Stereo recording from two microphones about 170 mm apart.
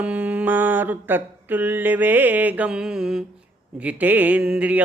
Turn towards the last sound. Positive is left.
turn(degrees=-10)  # may be behind; listen again after turning